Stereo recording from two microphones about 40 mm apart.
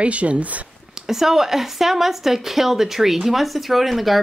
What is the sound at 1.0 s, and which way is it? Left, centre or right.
A woman's voice, centre.